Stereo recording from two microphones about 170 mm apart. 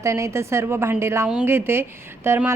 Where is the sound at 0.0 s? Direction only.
15° right (ahead or behind).